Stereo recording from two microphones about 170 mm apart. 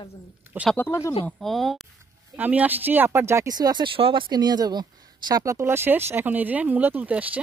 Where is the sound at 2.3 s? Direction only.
10° right (ahead or behind).